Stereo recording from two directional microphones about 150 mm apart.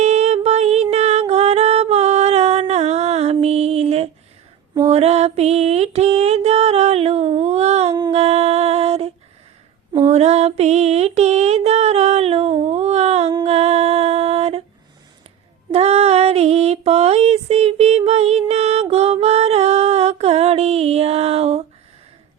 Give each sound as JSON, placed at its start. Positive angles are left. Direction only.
{"t": 0.0, "sound": "music", "side_deg": -50}
{"t": 8.1, "sound": "a sound", "side_deg": -45}
{"t": 13.4, "sound": "music", "side_deg": -45}
{"t": 15.7, "sound": "female singing", "side_deg": -45}